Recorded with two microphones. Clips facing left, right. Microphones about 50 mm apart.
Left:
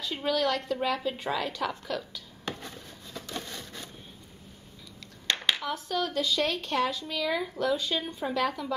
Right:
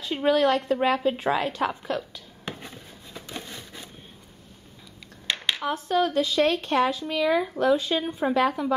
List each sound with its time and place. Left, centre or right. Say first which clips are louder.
0.0 s a woman's voice: right 7 dB; right
2.4 s a sound: right 1 dB; centre
5.6 s speech: right 7 dB; right